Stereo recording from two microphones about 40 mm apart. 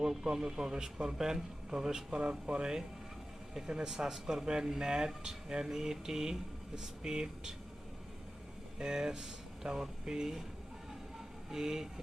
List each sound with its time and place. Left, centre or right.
0.0 s speech: centre
8.8 s speech: centre
11.5 s speech: centre